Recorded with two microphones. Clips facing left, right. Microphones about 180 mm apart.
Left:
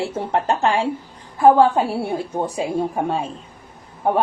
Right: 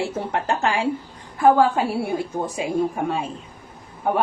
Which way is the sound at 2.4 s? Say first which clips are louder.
Left 1 dB; 30° left (ahead or behind).